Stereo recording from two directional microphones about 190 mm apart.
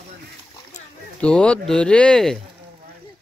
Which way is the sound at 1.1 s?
5° left (ahead or behind).